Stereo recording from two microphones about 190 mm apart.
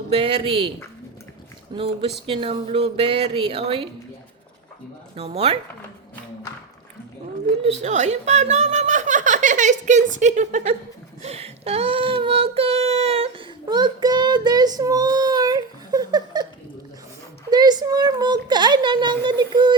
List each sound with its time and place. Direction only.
0.1 s speech: 30° right (ahead or behind)
1.7 s speech: 30° right (ahead or behind)
5.1 s speech: 30° right (ahead or behind)
7.6 s speech: 35° right (ahead or behind)
11.2 s child singing: 35° right (ahead or behind)
17.5 s a child's voice: 20° right (ahead or behind)